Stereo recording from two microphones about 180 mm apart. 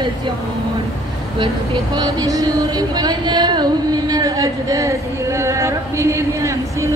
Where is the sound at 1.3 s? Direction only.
25° right (ahead or behind).